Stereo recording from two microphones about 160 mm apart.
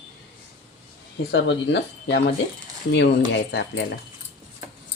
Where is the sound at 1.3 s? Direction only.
90° left.